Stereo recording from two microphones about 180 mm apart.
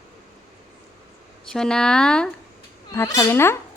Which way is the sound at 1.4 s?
5° left (ahead or behind).